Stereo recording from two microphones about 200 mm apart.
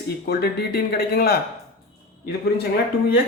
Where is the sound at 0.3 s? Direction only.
50° left (ahead or behind).